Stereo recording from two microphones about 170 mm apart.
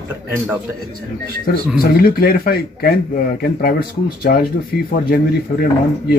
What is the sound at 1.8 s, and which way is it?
Speech, 60° left (ahead or behind).